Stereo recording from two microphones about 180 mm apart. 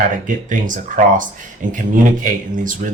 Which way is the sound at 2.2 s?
45° right (ahead or behind).